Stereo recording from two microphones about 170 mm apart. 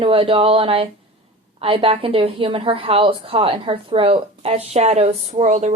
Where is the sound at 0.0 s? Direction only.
35° right (ahead or behind).